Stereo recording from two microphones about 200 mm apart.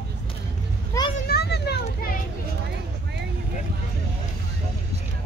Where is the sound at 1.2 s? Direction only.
50° left (ahead or behind).